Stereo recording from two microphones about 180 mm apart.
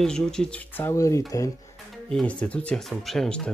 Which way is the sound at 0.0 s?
5° left (ahead or behind).